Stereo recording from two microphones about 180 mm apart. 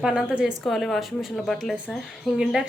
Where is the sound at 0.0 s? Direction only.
5° right (ahead or behind).